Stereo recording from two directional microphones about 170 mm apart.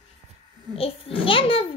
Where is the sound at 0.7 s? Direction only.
35° left (ahead or behind).